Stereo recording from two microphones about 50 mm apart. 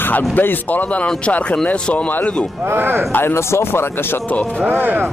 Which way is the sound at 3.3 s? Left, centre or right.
Left.